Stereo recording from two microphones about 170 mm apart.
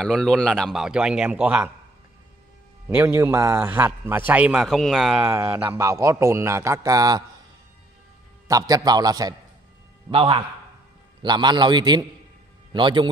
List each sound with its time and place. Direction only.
0.0 s a man's voice: 5° left (ahead or behind)
2.9 s a man's voice: 10° right (ahead or behind)
5.2 s speech: 15° right (ahead or behind)
8.5 s a man's voice: 20° right (ahead or behind)